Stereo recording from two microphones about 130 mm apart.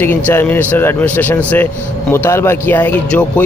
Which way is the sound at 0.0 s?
15° left (ahead or behind).